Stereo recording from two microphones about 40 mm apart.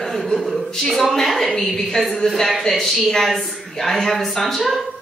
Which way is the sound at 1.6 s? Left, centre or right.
Centre.